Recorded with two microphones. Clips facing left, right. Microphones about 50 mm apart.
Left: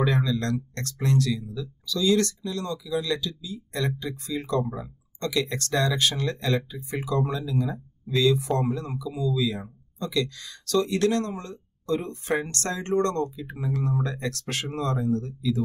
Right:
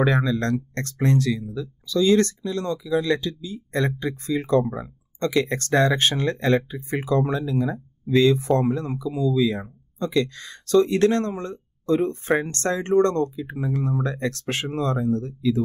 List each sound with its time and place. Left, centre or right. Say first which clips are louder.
0.0 s speech: right 4 dB; right